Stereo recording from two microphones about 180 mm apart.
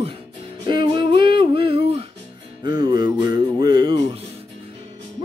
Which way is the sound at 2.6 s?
25° right (ahead or behind).